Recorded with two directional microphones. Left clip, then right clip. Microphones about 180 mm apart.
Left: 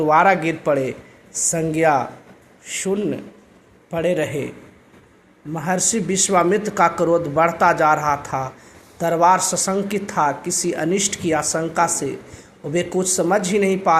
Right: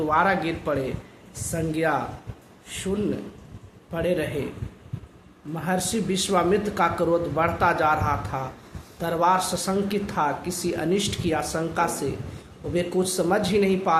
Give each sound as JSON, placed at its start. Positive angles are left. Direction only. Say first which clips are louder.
{"t": 0.1, "sound": "a man's voice", "louder": "left 7 dB", "side_deg": 35}
{"t": 5.5, "sound": "speech", "louder": "left 5 dB", "side_deg": 30}